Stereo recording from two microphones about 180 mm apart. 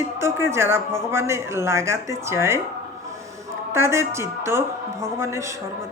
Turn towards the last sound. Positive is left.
turn(degrees=-15)  # may be behind; listen again after turning